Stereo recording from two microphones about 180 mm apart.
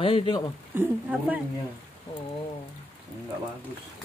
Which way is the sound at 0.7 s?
10° right (ahead or behind).